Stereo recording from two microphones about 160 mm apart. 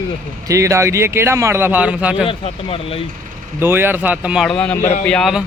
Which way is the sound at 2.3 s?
35° left (ahead or behind).